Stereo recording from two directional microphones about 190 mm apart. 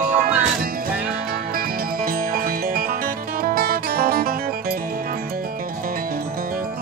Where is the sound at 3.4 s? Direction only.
50° right (ahead or behind).